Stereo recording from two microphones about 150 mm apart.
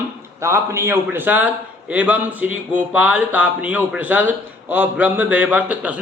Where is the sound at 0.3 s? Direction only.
20° right (ahead or behind).